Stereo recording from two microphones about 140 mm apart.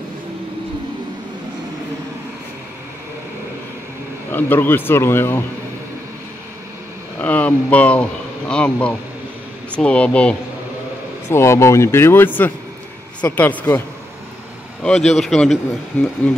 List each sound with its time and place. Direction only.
4.3 s speech: 15° left (ahead or behind)
7.2 s speech: 10° left (ahead or behind)
11.2 s speech: 20° left (ahead or behind)
15.0 s a man's voice: 5° left (ahead or behind)